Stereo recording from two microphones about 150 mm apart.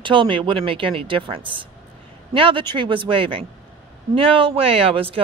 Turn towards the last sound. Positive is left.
turn(degrees=-40)  # may be behind; listen again after turning